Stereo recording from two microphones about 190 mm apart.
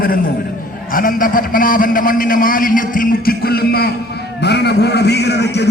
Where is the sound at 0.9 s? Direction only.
50° left (ahead or behind).